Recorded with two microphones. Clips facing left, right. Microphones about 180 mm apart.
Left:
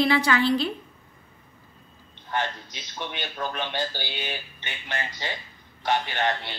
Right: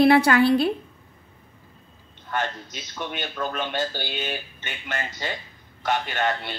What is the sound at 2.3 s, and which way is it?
Speech, 45° right (ahead or behind).